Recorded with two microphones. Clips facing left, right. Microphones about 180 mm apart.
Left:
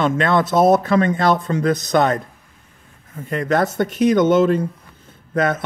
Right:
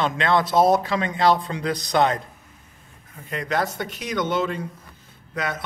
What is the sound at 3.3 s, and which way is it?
Speech, 50° left (ahead or behind).